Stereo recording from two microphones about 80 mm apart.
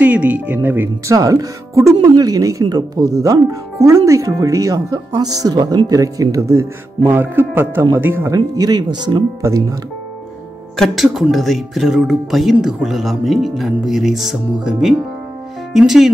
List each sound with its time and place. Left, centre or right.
0.0 s speech: centre
1.0 s speech: right
2.0 s speech: right
8.4 s speech: right
9.4 s speech: right
10.8 s speech: centre